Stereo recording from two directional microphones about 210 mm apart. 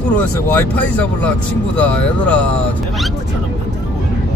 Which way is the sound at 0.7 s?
5° left (ahead or behind).